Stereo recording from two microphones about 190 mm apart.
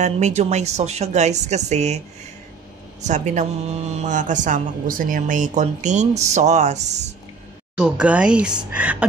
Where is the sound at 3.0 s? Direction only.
40° right (ahead or behind).